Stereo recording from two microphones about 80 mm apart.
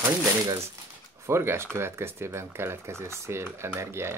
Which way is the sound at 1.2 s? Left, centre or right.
Right.